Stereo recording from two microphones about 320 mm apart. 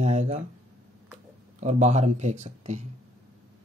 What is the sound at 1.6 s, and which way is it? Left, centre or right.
Speech, right.